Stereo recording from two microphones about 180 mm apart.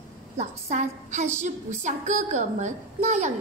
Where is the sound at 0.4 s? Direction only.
40° right (ahead or behind).